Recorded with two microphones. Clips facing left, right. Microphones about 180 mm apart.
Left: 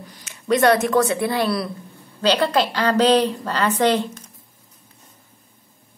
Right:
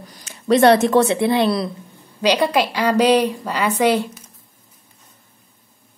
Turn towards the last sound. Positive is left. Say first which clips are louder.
# right 1 dB
turn(degrees=-10)  # may be behind; listen again after turning